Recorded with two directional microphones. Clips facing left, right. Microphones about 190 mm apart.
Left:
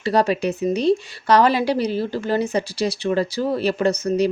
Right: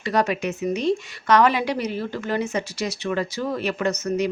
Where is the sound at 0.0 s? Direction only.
30° left (ahead or behind).